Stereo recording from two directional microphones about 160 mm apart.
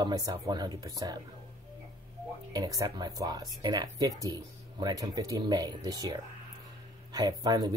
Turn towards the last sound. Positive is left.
turn(degrees=-25)  # may be behind; listen again after turning